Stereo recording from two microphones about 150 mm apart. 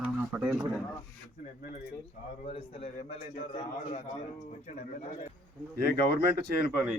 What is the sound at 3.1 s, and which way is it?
Speech, 40° left (ahead or behind).